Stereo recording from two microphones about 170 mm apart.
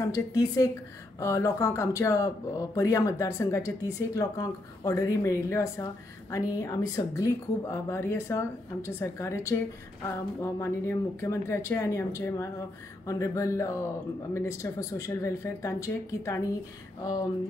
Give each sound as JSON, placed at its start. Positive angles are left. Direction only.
{"t": 0.0, "sound": "a woman's voice", "side_deg": 20}